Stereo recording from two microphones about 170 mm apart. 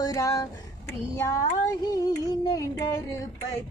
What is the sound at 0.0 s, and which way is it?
Speech, 20° left (ahead or behind).